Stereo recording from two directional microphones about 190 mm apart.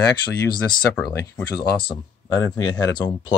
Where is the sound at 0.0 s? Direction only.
20° left (ahead or behind).